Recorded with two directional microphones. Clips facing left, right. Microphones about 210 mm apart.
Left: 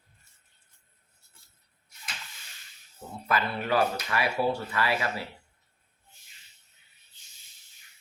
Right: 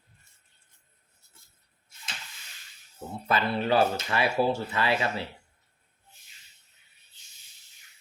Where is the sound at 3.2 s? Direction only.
30° right (ahead or behind).